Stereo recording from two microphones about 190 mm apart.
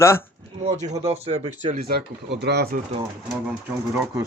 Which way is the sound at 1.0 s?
35° right (ahead or behind).